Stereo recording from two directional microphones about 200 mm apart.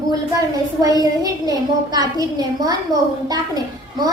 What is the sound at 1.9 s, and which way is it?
A woman's voice, 20° right (ahead or behind).